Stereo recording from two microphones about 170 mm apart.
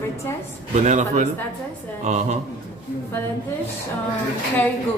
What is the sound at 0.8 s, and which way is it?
A man's voice, 45° right (ahead or behind).